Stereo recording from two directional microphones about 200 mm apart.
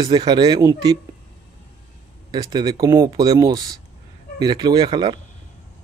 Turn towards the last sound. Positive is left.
turn(degrees=-20)  # may be behind; listen again after turning